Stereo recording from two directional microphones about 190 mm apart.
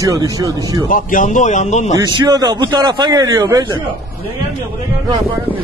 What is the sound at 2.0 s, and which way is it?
A man's voice, 20° right (ahead or behind).